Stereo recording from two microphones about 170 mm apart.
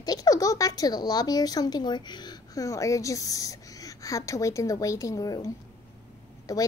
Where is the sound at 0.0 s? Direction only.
20° left (ahead or behind).